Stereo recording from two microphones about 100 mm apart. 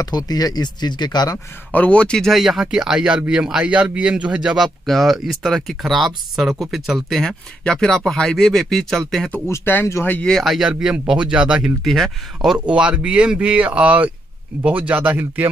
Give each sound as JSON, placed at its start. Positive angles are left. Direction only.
{"t": 0.0, "sound": "speech", "side_deg": 40}
{"t": 1.7, "sound": "speech", "side_deg": 15}
{"t": 9.5, "sound": "speech", "side_deg": 25}
{"t": 10.3, "sound": "speech", "side_deg": 0}
{"t": 11.8, "sound": "speech", "side_deg": 0}
{"t": 12.5, "sound": "speech", "side_deg": -10}